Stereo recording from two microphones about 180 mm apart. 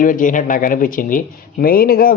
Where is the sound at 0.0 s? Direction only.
45° left (ahead or behind).